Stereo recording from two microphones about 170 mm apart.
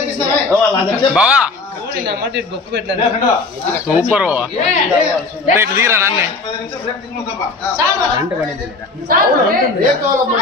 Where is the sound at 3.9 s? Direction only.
5° right (ahead or behind).